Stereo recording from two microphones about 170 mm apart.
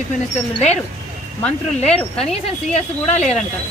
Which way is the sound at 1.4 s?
40° left (ahead or behind).